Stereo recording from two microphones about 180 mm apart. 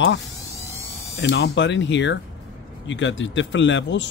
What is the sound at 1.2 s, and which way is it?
Speech, 75° left (ahead or behind).